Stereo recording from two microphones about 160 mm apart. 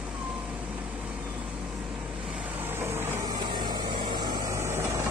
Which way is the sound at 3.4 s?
25° right (ahead or behind).